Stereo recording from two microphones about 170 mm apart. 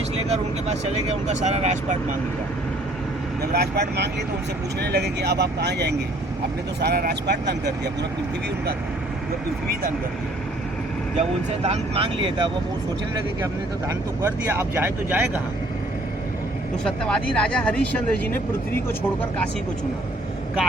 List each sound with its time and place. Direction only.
0.2 s speech: 40° right (ahead or behind)
3.5 s speech: 70° right (ahead or behind)
6.7 s speech: 65° right (ahead or behind)
11.2 s speech: 40° right (ahead or behind)
13.4 s speech: 15° right (ahead or behind)
16.8 s speech: 5° left (ahead or behind)